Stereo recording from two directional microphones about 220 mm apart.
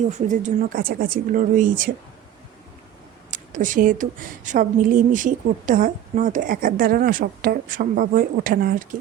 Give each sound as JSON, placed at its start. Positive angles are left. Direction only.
{"t": 0.1, "sound": "a woman's voice", "side_deg": -35}
{"t": 3.2, "sound": "a woman's voice", "side_deg": -35}